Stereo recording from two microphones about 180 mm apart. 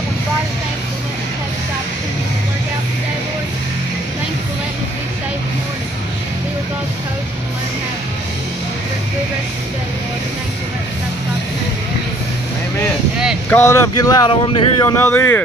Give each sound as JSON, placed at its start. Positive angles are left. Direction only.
{"t": 13.5, "sound": "speech", "side_deg": 15}